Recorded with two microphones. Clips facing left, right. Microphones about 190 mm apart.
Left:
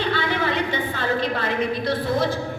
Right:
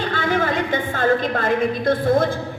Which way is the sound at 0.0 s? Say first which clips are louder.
Right 2 dB; 45° right (ahead or behind).